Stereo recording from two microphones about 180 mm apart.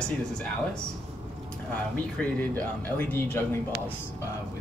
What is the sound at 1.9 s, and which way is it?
Speech, 10° left (ahead or behind).